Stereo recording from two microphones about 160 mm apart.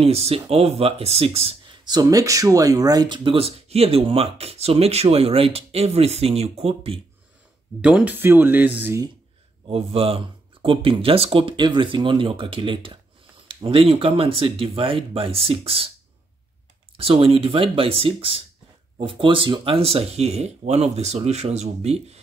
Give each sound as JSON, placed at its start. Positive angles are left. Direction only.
{"t": 0.0, "sound": "speech", "side_deg": -40}
{"t": 7.8, "sound": "speech", "side_deg": -10}
{"t": 9.7, "sound": "speech", "side_deg": -35}
{"t": 16.9, "sound": "speech", "side_deg": -35}